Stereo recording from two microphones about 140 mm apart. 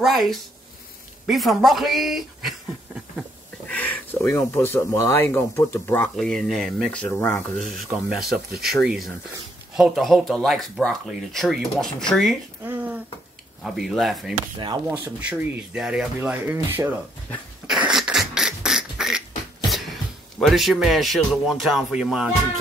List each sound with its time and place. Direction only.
0.0 s speech: centre (ahead or behind)
1.2 s a sound: centre (ahead or behind)
3.7 s speech: 10° left (ahead or behind)
6.1 s speech: 5° left (ahead or behind)
12.6 s a sound: 15° right (ahead or behind)
13.7 s speech: centre (ahead or behind)
14.9 s speech: 10° right (ahead or behind)
17.6 s a sound: 5° right (ahead or behind)
20.3 s speech: centre (ahead or behind)